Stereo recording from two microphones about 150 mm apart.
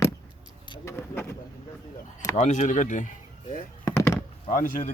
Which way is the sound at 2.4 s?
50° left (ahead or behind).